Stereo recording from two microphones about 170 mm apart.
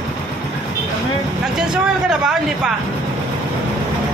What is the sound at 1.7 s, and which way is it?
A man's voice, 5° right (ahead or behind).